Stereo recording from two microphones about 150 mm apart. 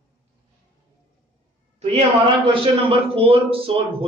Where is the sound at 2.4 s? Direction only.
40° right (ahead or behind).